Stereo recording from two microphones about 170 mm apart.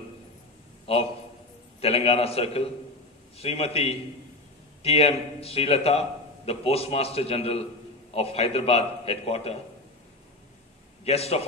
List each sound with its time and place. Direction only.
0.9 s a man's voice: 35° left (ahead or behind)
11.1 s a man's voice: 35° left (ahead or behind)